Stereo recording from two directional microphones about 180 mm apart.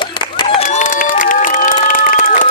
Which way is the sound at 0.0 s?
25° left (ahead or behind).